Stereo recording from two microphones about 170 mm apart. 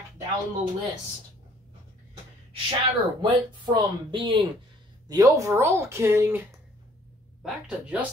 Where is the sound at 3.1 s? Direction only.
25° right (ahead or behind).